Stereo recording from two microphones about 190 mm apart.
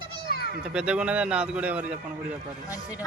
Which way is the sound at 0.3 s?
55° left (ahead or behind).